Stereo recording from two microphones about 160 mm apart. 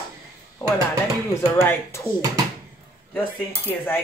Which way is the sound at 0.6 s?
15° left (ahead or behind).